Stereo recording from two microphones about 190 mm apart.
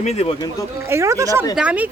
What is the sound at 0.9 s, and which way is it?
Speech, 15° right (ahead or behind).